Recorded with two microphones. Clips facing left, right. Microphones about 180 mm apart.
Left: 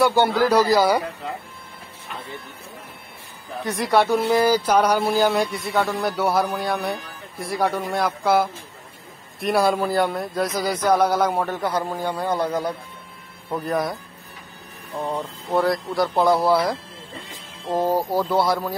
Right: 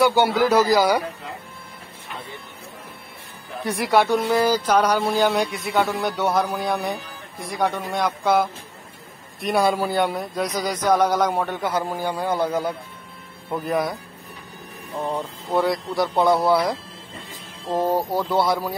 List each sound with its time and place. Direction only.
0.0 s speech: centre (ahead or behind)
3.9 s speech: centre (ahead or behind)
11.8 s a man's voice: 10° right (ahead or behind)
15.0 s a man's voice: 10° right (ahead or behind)
15.5 s speech: centre (ahead or behind)